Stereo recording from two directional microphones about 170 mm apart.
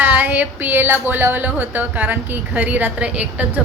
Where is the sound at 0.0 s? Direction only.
10° right (ahead or behind).